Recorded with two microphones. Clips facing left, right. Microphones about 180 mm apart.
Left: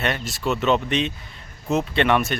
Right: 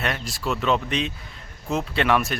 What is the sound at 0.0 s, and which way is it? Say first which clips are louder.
A man's voice: left 3 dB; centre (ahead or behind).